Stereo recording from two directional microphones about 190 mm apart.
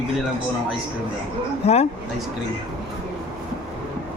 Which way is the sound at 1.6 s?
35° left (ahead or behind).